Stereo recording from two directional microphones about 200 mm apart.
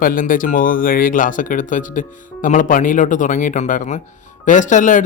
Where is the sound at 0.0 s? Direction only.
45° left (ahead or behind).